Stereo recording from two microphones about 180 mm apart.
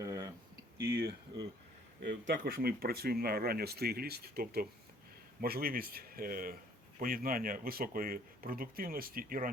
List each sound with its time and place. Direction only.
0.0 s a sound: 20° right (ahead or behind)
0.8 s speech: 55° right (ahead or behind)
2.3 s speech: 55° right (ahead or behind)